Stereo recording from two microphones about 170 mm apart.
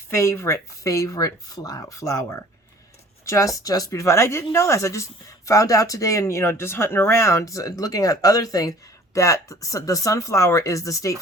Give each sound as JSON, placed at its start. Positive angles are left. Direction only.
{"t": 0.1, "sound": "speech", "side_deg": 15}